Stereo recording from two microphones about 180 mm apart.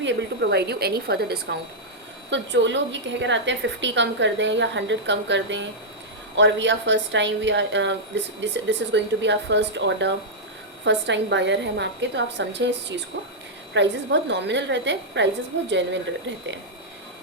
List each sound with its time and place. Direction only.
0.0 s a woman's voice: 70° right (ahead or behind)
2.3 s a woman's voice: 85° right
13.7 s a woman's voice: 75° right (ahead or behind)